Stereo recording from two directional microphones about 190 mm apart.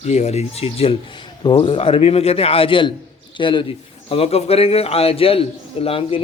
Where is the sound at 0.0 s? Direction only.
35° left (ahead or behind).